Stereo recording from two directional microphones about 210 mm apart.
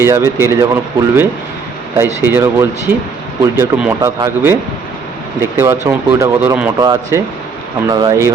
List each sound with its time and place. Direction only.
0.0 s speech: 10° right (ahead or behind)
2.0 s speech: 10° right (ahead or behind)